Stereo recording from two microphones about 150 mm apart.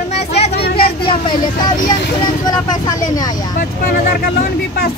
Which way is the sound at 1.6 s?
30° left (ahead or behind).